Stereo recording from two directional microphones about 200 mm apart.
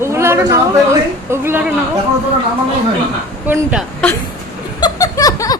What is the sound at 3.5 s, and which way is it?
Speech, 10° right (ahead or behind).